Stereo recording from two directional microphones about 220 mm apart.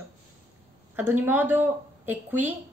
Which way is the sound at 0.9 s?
10° right (ahead or behind).